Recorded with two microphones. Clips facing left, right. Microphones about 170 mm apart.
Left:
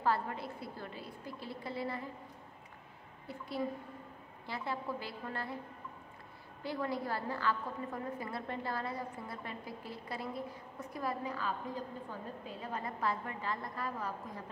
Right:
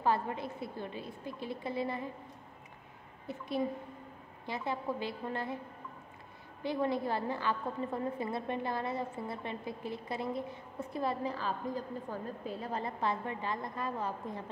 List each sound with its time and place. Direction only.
0.0 s a woman's voice: 20° right (ahead or behind)
3.3 s a woman's voice: 20° right (ahead or behind)
6.6 s a woman's voice: 20° right (ahead or behind)